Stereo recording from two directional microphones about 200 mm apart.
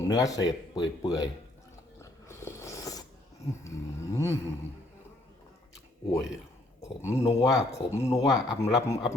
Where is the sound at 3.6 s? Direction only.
15° left (ahead or behind).